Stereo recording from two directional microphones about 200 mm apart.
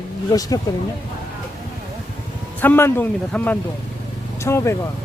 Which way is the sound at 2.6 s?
10° left (ahead or behind).